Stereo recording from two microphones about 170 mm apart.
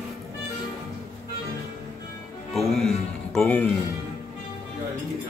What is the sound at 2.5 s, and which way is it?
Music, centre (ahead or behind).